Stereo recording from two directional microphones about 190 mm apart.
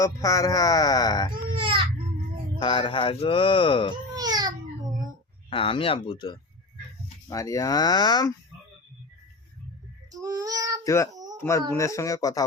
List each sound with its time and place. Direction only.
0.0 s speech: 15° left (ahead or behind)
1.3 s baby cry: 25° right (ahead or behind)
2.6 s speech: 25° left (ahead or behind)
4.1 s baby cry: 20° right (ahead or behind)
5.5 s speech: 25° left (ahead or behind)
10.1 s babbling: 20° right (ahead or behind)
10.8 s speech: 15° left (ahead or behind)